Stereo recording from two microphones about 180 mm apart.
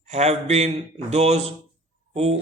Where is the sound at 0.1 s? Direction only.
35° right (ahead or behind).